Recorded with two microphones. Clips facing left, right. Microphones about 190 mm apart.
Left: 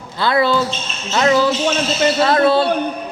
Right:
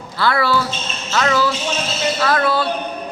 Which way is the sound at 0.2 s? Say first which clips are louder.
Left 2 dB; 20° left (ahead or behind).